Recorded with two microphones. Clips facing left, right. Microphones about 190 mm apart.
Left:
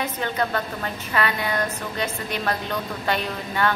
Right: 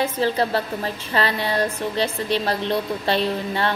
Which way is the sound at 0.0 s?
30° right (ahead or behind).